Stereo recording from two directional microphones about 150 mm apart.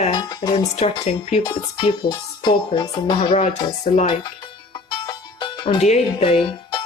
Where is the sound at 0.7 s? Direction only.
45° left (ahead or behind).